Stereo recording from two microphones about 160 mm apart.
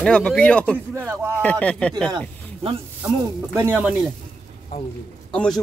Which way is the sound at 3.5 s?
15° right (ahead or behind).